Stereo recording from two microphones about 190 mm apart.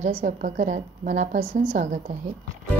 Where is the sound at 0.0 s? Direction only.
45° right (ahead or behind).